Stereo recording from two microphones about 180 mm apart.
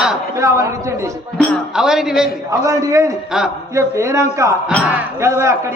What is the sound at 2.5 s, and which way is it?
A man's voice, 15° right (ahead or behind).